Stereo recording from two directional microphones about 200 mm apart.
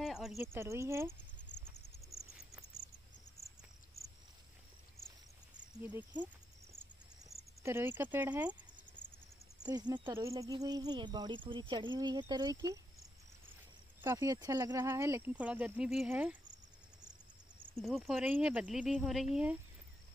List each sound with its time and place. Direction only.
0.0 s cricket: centre (ahead or behind)
0.4 s speech: 10° right (ahead or behind)
5.7 s speech: 10° right (ahead or behind)
7.6 s speech: 10° right (ahead or behind)
9.6 s speech: 20° right (ahead or behind)
14.0 s speech: 15° right (ahead or behind)
17.7 s speech: centre (ahead or behind)